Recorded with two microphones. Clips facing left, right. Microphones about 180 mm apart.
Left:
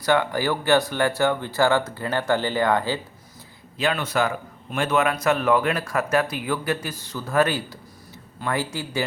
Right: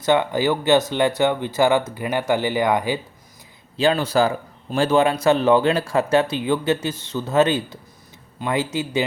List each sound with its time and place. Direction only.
0.0 s speech: 20° right (ahead or behind)
3.8 s speech: 30° right (ahead or behind)